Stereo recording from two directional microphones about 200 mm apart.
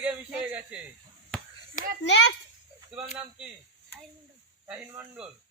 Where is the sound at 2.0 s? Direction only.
60° left (ahead or behind).